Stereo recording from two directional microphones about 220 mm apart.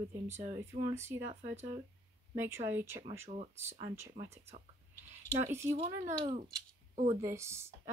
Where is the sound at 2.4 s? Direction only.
10° right (ahead or behind).